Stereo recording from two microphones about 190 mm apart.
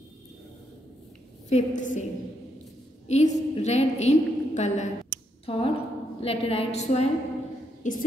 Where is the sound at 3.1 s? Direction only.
35° left (ahead or behind).